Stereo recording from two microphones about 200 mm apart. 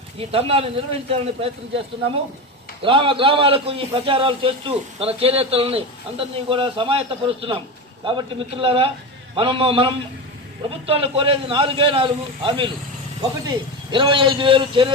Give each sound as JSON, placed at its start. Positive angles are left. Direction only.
{"t": 0.2, "sound": "a man's voice", "side_deg": -30}
{"t": 2.8, "sound": "a man's voice", "side_deg": -25}